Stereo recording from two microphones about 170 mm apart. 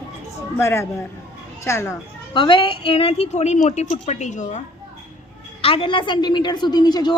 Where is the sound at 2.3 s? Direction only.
30° left (ahead or behind); by 4.6 s 45° left (ahead or behind).